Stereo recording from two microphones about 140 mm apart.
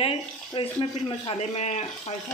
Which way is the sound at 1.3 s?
50° left (ahead or behind).